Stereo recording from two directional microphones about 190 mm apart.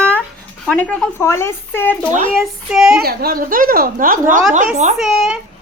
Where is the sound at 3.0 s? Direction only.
55° right (ahead or behind); by 5.0 s 35° right (ahead or behind).